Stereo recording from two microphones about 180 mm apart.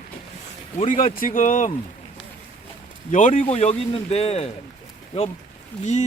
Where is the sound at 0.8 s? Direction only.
45° left (ahead or behind).